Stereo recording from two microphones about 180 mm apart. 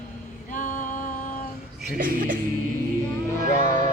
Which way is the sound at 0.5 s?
45° left (ahead or behind).